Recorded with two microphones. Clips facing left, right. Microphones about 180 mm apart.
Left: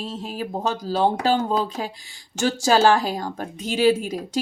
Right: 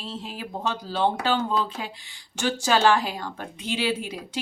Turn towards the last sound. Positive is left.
turn(degrees=45)  # may be behind; listen again after turning